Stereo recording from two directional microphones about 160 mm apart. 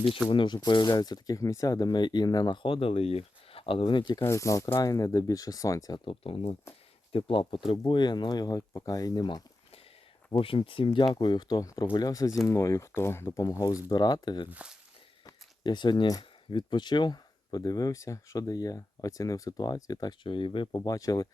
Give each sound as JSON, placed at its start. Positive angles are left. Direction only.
{"t": 0.3, "sound": "speech", "side_deg": 30}
{"t": 4.2, "sound": "speech", "side_deg": 20}
{"t": 6.1, "sound": "speech", "side_deg": 35}
{"t": 14.5, "sound": "speech", "side_deg": -5}
{"t": 15.3, "sound": "speech", "side_deg": 25}